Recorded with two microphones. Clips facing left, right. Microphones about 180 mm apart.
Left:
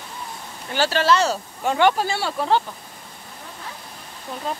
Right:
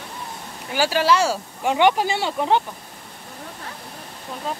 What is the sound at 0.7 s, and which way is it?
Speech, 10° right (ahead or behind).